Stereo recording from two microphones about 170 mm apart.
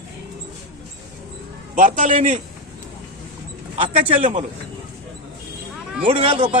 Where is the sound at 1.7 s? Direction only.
50° right (ahead or behind).